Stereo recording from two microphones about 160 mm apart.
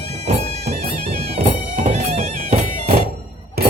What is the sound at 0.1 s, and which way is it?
Music, 45° right (ahead or behind).